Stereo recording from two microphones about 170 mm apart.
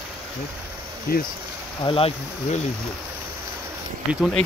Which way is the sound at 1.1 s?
60° left (ahead or behind).